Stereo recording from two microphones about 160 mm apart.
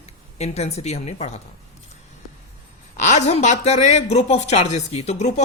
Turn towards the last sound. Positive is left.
turn(degrees=45)  # may be behind; listen again after turning